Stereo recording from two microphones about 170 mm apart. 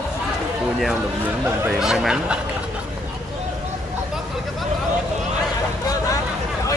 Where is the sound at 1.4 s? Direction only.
5° right (ahead or behind).